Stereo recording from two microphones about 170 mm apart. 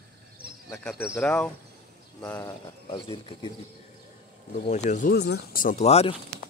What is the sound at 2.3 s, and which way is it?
Speech, 25° left (ahead or behind).